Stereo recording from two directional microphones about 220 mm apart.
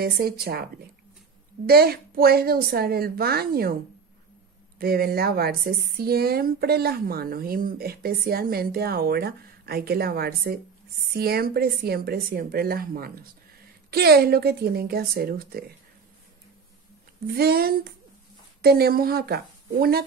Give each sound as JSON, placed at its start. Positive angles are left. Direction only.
{"t": 0.0, "sound": "a woman's voice", "side_deg": -45}
{"t": 1.7, "sound": "a woman's voice", "side_deg": -45}
{"t": 4.7, "sound": "a woman's voice", "side_deg": -45}
{"t": 17.4, "sound": "a woman's voice", "side_deg": -45}